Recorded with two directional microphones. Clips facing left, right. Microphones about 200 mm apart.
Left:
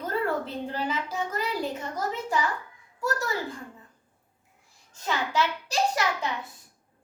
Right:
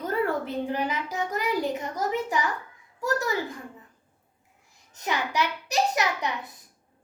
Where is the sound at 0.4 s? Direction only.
15° right (ahead or behind).